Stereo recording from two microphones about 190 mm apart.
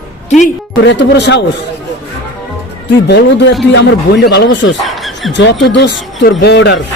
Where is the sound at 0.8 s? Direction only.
65° left (ahead or behind).